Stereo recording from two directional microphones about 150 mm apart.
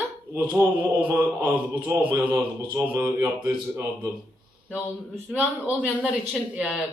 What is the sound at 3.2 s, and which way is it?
Speech, 25° right (ahead or behind).